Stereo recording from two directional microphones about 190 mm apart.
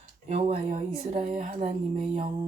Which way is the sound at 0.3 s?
35° right (ahead or behind).